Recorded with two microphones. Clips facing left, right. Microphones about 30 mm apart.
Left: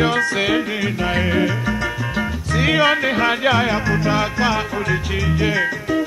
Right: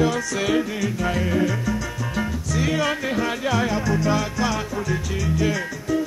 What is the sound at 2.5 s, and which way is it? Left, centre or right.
Music, left.